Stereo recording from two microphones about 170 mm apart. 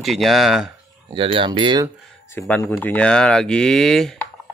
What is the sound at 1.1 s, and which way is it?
Speech, 30° right (ahead or behind).